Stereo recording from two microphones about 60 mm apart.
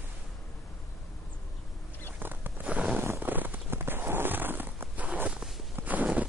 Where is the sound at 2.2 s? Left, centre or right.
Right.